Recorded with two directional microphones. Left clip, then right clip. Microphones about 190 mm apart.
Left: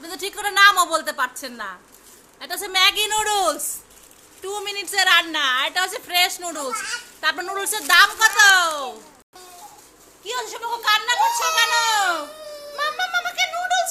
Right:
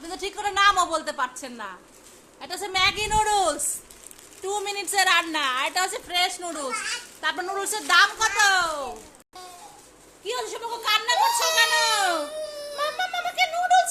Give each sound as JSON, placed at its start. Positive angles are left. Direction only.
{"t": 0.0, "sound": "a woman's voice", "side_deg": 5}
{"t": 6.1, "sound": "a woman's voice", "side_deg": 10}
{"t": 10.2, "sound": "a child's voice", "side_deg": -10}
{"t": 12.7, "sound": "music", "side_deg": -10}